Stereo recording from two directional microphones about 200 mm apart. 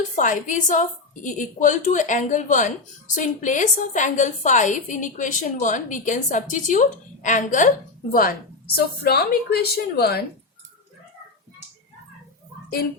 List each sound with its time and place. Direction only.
0.2 s a woman's voice: 40° left (ahead or behind)
8.1 s a woman's voice: 50° left (ahead or behind)